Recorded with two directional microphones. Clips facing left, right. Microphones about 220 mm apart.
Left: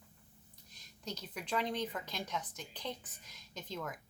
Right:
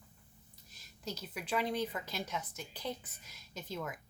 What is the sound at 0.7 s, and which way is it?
A woman's voice, 5° right (ahead or behind).